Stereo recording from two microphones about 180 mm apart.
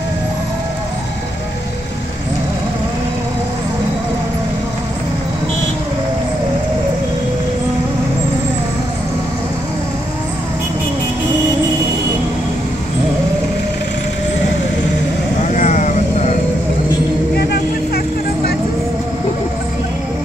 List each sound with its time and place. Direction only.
15.5 s vehicle: 40° left (ahead or behind)
17.4 s vehicle: 65° left (ahead or behind)